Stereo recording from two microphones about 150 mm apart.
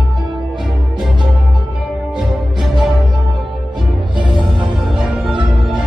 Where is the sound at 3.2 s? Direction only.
30° right (ahead or behind).